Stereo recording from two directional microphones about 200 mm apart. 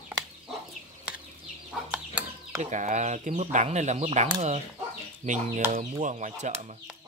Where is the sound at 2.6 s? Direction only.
35° right (ahead or behind).